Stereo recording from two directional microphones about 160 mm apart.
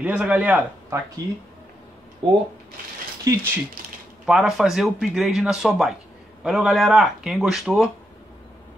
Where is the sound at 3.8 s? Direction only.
65° right (ahead or behind).